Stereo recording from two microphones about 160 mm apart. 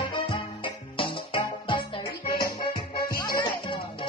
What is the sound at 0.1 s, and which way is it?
Music, 30° left (ahead or behind).